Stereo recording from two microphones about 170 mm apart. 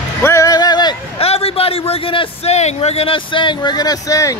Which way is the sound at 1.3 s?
35° left (ahead or behind).